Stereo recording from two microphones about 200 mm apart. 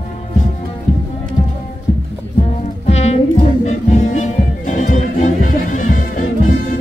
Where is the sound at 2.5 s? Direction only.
35° left (ahead or behind).